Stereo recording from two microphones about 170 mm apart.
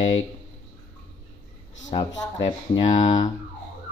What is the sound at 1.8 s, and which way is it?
Speech, 45° left (ahead or behind).